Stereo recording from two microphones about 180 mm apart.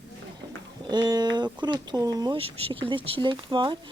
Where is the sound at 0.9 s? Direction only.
25° right (ahead or behind).